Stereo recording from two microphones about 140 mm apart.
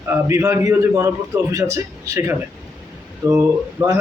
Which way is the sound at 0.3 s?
20° right (ahead or behind).